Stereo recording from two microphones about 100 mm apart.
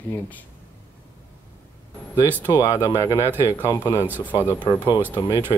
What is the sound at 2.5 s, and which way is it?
Speech, 45° left (ahead or behind).